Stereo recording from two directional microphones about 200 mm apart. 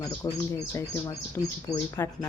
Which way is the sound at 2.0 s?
10° left (ahead or behind).